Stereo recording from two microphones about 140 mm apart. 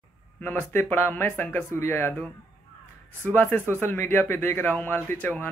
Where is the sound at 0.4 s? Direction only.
15° left (ahead or behind).